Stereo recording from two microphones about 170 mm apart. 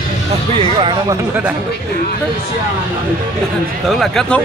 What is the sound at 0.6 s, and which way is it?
Speech, 30° right (ahead or behind).